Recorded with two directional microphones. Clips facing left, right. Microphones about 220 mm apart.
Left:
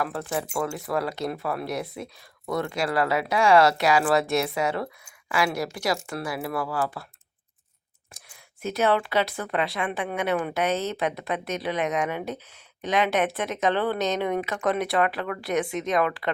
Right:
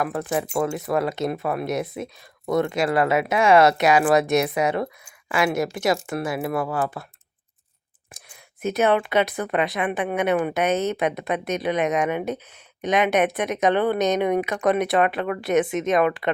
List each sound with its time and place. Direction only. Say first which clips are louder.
0.0 s speech: right 4 dB; 15° right (ahead or behind)
8.1 s speech: right 4 dB; 20° right (ahead or behind)